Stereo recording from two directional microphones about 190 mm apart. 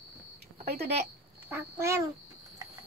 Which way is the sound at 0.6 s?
55° right (ahead or behind).